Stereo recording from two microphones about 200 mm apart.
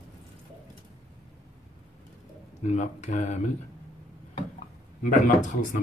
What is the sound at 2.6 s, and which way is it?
Speech, 35° left (ahead or behind).